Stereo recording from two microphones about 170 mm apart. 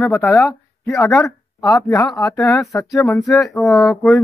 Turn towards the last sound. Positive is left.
turn(degrees=15)  # may be behind; listen again after turning